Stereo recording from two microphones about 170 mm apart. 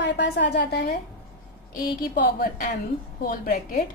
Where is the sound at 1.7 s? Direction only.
60° left (ahead or behind).